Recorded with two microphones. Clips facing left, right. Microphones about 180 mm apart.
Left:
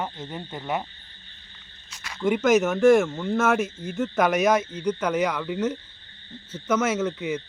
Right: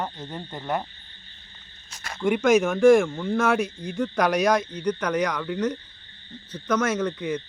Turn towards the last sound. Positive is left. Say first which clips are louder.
# even
turn(degrees=5)  # may be behind; listen again after turning